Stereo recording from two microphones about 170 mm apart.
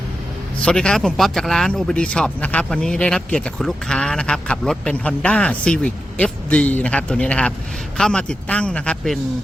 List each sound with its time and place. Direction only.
0.6 s a man's voice: 5° left (ahead or behind)